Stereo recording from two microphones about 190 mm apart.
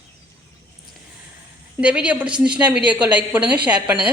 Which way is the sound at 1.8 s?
5° right (ahead or behind).